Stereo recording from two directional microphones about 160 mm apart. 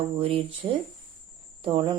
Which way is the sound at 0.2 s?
35° right (ahead or behind).